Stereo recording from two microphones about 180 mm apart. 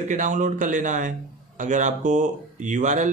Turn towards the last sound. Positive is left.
turn(degrees=-45)  # may be behind; listen again after turning